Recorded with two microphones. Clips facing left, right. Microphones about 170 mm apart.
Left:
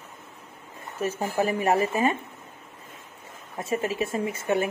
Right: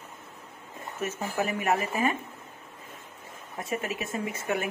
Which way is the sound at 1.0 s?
30° left (ahead or behind).